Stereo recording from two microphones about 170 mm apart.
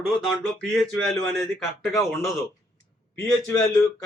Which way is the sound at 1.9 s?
15° left (ahead or behind).